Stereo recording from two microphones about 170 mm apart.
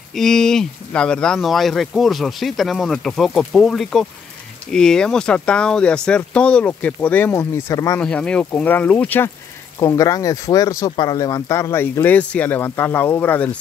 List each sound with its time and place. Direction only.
0.1 s speech: 5° left (ahead or behind); by 8.0 s 20° left (ahead or behind)
8.0 s speech: 5° left (ahead or behind)